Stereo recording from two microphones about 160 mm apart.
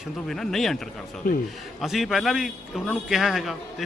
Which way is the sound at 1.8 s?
Centre (ahead or behind).